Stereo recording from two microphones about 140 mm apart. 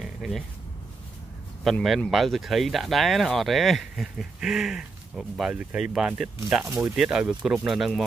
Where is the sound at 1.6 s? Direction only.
Centre (ahead or behind).